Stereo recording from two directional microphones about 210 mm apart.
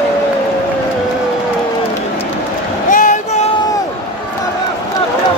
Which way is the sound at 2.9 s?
40° left (ahead or behind).